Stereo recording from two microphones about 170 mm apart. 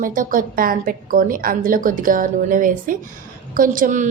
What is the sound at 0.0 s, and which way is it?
A woman's voice, 55° right (ahead or behind).